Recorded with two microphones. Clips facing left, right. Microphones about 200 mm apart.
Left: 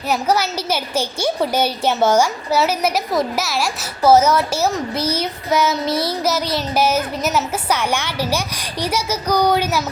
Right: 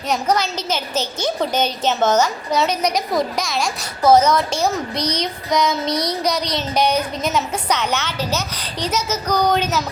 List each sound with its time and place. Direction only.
0.1 s a woman's voice: 10° left (ahead or behind)